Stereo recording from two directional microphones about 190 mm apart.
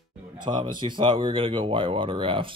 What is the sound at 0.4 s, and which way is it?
Speech, 25° right (ahead or behind).